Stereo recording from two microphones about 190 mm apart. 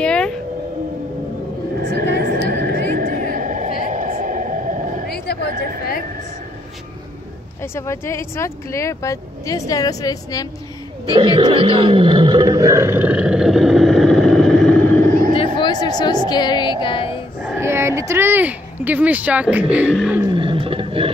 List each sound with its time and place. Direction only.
0.0 s vehicle: 5° left (ahead or behind)
2.0 s a sound: 60° right (ahead or behind); by 4.7 s 45° right (ahead or behind)
7.6 s speech: 15° left (ahead or behind)
11.1 s speech: 25° right (ahead or behind); by 14.8 s 5° left (ahead or behind)
15.3 s a sound: 25° left (ahead or behind)
16.3 s music: 20° left (ahead or behind)
17.6 s speech: 15° right (ahead or behind)
20.2 s roaring cats: 25° right (ahead or behind)